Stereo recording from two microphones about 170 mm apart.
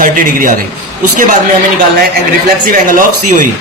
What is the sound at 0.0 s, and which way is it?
Speech, 55° right (ahead or behind).